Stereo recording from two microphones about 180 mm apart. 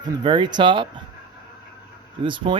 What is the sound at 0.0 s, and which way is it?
Speech, 25° right (ahead or behind).